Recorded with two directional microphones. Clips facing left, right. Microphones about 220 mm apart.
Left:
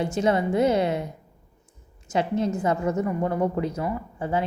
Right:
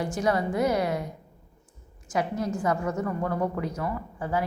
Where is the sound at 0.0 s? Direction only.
25° left (ahead or behind).